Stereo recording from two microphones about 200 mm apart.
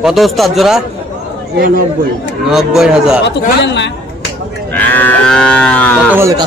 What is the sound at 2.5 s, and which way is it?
Speech, centre (ahead or behind).